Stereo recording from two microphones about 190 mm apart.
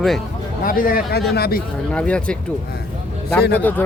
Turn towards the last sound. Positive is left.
turn(degrees=10)  # may be behind; listen again after turning